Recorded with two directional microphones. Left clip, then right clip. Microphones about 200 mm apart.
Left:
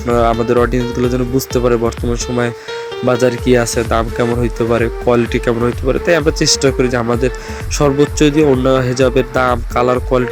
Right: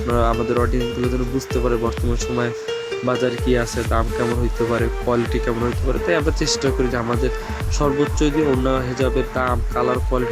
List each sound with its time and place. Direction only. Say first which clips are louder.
0.1 s speech: left 7 dB; 20° left (ahead or behind)
3.1 s speech: left 8 dB; 25° left (ahead or behind)